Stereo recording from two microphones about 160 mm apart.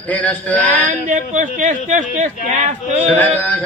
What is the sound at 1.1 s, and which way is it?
Speech, 50° right (ahead or behind).